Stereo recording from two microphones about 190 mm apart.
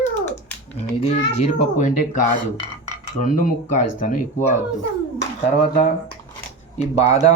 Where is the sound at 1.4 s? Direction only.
40° left (ahead or behind).